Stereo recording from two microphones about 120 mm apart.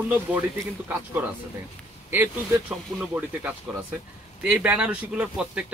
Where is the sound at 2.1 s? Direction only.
15° right (ahead or behind).